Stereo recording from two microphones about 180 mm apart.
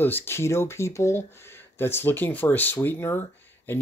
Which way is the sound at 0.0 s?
10° left (ahead or behind).